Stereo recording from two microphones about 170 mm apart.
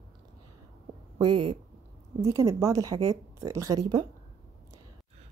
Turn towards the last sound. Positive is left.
turn(degrees=-25)  # may be behind; listen again after turning